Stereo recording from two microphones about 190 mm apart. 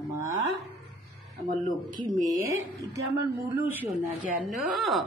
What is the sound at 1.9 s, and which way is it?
A woman's voice, 15° right (ahead or behind).